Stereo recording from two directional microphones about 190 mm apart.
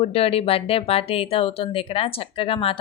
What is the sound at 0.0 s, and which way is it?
Speech, 30° left (ahead or behind).